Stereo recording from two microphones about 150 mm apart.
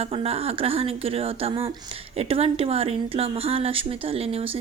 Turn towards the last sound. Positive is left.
turn(degrees=-40)  # may be behind; listen again after turning